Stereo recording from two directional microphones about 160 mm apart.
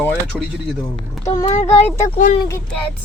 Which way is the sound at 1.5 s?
45° left (ahead or behind).